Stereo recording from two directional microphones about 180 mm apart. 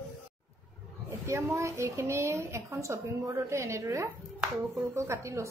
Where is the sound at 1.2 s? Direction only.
15° right (ahead or behind).